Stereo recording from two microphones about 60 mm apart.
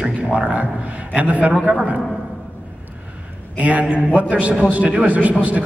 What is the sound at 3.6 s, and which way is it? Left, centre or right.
A man's voice, right.